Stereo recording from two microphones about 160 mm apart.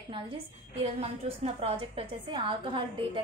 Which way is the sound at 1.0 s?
40° right (ahead or behind).